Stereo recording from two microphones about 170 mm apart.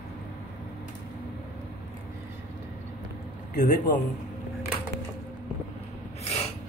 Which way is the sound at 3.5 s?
50° left (ahead or behind).